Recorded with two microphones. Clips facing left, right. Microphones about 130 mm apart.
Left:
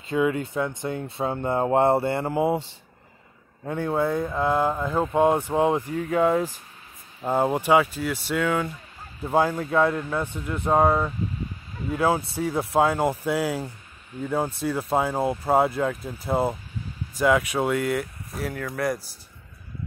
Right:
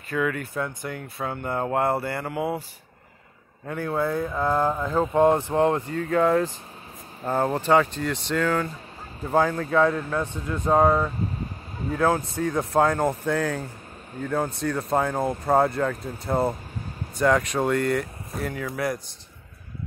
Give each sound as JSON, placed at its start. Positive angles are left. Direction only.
{"t": 0.1, "sound": "speech", "side_deg": 20}
{"t": 3.6, "sound": "speech", "side_deg": 25}
{"t": 4.3, "sound": "speech", "side_deg": 10}